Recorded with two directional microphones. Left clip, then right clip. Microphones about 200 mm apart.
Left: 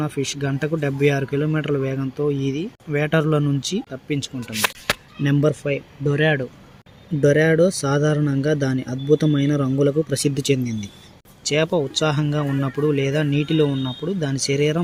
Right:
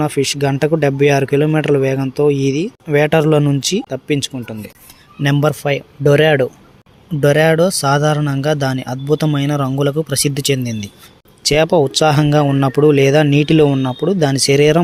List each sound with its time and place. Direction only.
0.0 s speech: 45° right (ahead or behind)